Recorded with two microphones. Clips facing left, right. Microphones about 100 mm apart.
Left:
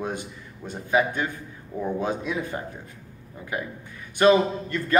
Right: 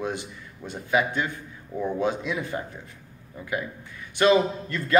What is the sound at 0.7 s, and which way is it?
Speech, 40° left (ahead or behind).